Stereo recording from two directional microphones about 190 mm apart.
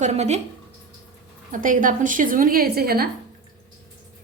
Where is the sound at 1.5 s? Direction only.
45° right (ahead or behind).